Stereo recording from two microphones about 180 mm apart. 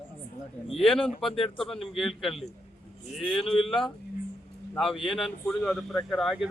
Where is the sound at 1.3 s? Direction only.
30° left (ahead or behind).